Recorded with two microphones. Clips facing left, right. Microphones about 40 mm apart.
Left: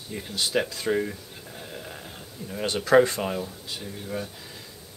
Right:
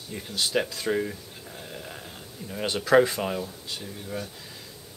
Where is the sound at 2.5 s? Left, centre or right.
Centre.